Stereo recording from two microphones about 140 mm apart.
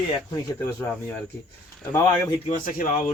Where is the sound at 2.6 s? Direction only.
85° left.